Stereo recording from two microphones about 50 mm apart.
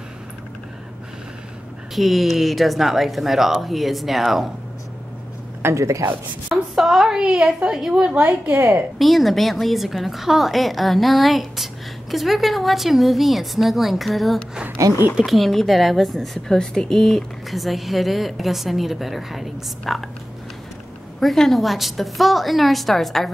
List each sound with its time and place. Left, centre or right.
2.0 s a woman's voice: centre
5.6 s speech: right
6.5 s child singing: centre
8.9 s a woman's voice: centre
14.8 s speech: right
15.2 s a woman's voice: centre
16.4 s a woman's voice: centre
21.2 s a woman's voice: centre